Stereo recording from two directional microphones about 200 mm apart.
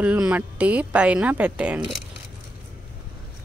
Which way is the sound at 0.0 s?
5° right (ahead or behind).